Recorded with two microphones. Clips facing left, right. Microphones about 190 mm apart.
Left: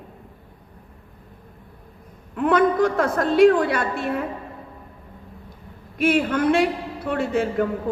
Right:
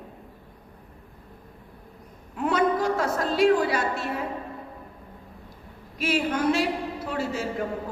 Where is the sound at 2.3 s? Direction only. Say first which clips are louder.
Left 5 dB; 55° left (ahead or behind).